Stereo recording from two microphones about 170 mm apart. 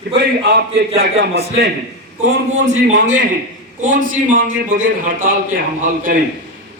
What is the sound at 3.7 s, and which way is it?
A man's voice, 50° right (ahead or behind).